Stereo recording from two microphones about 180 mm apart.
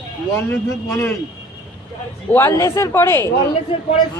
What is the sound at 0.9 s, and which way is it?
Speech, 15° left (ahead or behind).